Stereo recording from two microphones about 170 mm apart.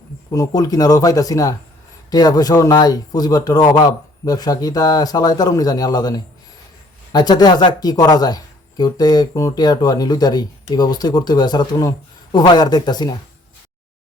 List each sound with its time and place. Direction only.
0.3 s speech: 20° left (ahead or behind)